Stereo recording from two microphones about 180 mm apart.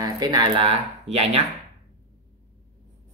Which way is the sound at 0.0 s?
20° right (ahead or behind).